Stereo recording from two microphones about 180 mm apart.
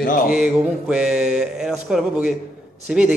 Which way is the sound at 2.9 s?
5° right (ahead or behind).